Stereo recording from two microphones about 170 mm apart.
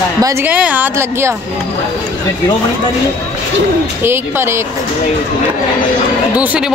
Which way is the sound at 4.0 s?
15° right (ahead or behind).